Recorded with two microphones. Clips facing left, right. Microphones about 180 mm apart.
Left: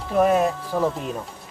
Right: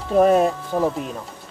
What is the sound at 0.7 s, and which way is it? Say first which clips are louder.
Speech: right 1 dB; 20° right (ahead or behind).